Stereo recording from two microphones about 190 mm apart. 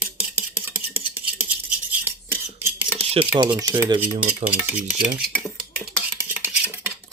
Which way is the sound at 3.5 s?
10° right (ahead or behind).